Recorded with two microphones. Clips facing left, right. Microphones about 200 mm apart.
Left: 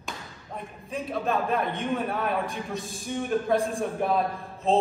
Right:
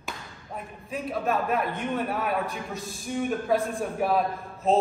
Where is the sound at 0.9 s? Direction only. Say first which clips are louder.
Even; centre (ahead or behind).